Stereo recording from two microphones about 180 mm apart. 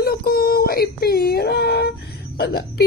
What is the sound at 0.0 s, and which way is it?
Speech, 55° left (ahead or behind).